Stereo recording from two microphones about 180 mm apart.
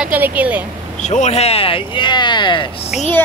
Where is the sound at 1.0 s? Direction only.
40° left (ahead or behind); by 2.7 s 25° left (ahead or behind).